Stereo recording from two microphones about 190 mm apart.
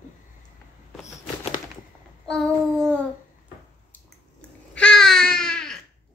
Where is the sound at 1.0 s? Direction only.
35° left (ahead or behind).